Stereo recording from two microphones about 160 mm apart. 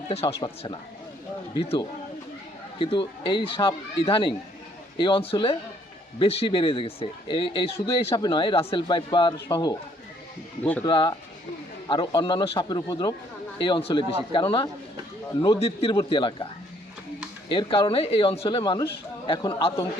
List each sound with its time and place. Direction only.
0.1 s speech: 40° left (ahead or behind)
10.6 s speech: 10° left (ahead or behind)
10.8 s a man's voice: 30° left (ahead or behind)
15.6 s speech: 40° left (ahead or behind)
17.5 s speech: 30° left (ahead or behind)